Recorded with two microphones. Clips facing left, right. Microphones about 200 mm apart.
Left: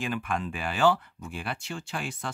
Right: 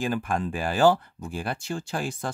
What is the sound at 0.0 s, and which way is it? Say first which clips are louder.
Speech: right 4 dB; 35° right (ahead or behind).